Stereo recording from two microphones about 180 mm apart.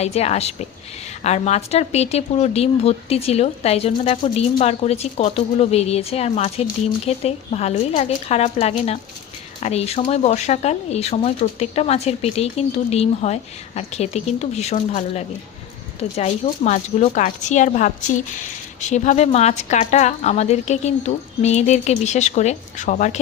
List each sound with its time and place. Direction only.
0.0 s a woman's voice: 35° left (ahead or behind)